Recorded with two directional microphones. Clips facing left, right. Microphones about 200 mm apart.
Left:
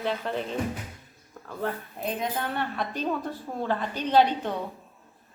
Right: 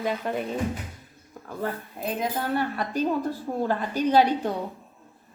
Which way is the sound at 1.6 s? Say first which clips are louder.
Even; 5° right (ahead or behind).